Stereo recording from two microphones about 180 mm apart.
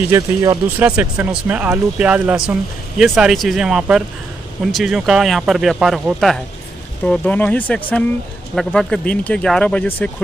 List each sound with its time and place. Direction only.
0.1 s speech: 20° right (ahead or behind)
0.7 s speech: 10° right (ahead or behind); by 10.1 s 10° left (ahead or behind)